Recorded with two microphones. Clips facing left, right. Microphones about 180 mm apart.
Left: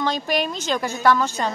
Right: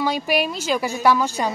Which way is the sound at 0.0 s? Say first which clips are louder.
Right 2 dB; 10° right (ahead or behind).